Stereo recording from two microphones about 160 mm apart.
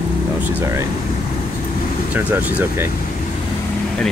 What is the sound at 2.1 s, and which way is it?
Speech, 10° right (ahead or behind).